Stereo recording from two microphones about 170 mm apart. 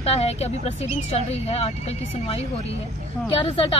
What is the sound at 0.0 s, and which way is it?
Speech, 35° left (ahead or behind).